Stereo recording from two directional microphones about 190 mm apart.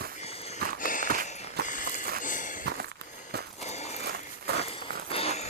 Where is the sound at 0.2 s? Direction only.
35° left (ahead or behind).